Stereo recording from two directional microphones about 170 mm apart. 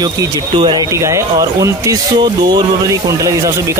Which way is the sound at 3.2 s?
20° right (ahead or behind).